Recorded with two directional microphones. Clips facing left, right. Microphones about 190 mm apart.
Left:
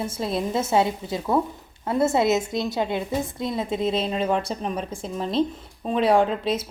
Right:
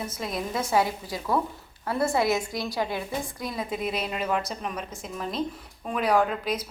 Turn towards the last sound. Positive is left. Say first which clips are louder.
# left 4 dB
turn(degrees=25)  # may be behind; listen again after turning